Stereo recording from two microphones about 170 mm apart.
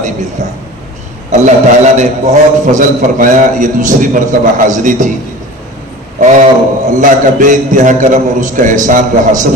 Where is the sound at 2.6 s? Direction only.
50° right (ahead or behind).